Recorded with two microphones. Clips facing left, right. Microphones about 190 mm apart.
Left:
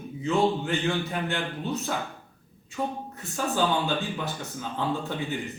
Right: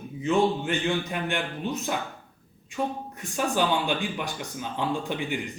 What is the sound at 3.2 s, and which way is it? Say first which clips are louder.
A man's voice: right 1 dB; 15° right (ahead or behind).